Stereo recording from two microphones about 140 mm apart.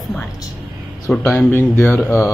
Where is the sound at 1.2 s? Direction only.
15° left (ahead or behind).